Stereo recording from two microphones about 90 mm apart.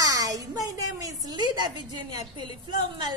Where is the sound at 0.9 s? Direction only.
45° right (ahead or behind).